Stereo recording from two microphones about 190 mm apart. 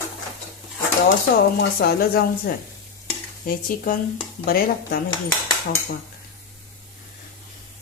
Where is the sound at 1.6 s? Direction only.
55° left (ahead or behind).